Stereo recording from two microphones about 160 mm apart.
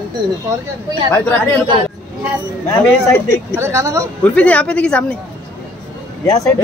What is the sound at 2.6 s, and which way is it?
Speech, 15° left (ahead or behind).